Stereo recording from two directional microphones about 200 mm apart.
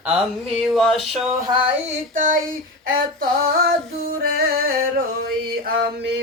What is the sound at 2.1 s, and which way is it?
Female singing, 40° right (ahead or behind).